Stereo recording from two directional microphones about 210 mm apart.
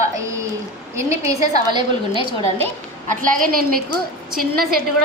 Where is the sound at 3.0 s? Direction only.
40° right (ahead or behind).